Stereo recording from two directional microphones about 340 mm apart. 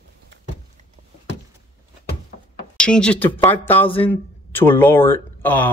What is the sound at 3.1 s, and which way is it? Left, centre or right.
Speech, centre.